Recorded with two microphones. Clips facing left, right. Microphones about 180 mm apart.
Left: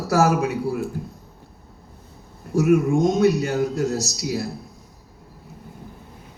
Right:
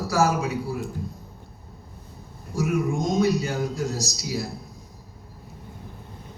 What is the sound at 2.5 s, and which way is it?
A man's voice, 65° left (ahead or behind).